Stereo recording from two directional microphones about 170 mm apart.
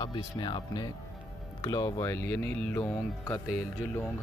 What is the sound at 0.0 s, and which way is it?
Speech, 25° left (ahead or behind).